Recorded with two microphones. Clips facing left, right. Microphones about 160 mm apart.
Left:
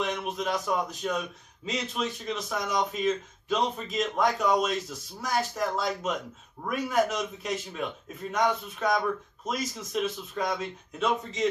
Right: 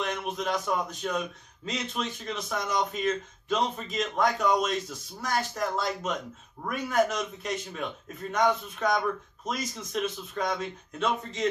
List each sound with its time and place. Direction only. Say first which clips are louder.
0.0 s a man's voice: left 1 dB; centre (ahead or behind)